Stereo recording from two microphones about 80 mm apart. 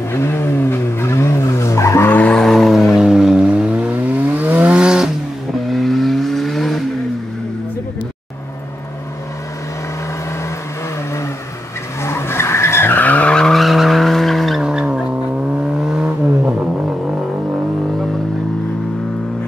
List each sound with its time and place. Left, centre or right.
0.1 s vehicle: left
2.0 s vehicle: left
2.3 s vehicle: centre
5.7 s vehicle: centre
12.0 s vehicle: left; by 16.5 s centre